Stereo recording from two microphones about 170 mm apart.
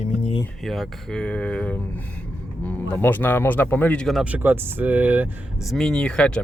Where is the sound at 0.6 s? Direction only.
Centre (ahead or behind).